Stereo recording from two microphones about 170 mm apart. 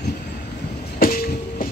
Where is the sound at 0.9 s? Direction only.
60° left (ahead or behind).